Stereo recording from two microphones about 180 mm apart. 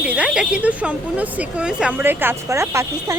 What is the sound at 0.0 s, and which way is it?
Speech, 5° right (ahead or behind).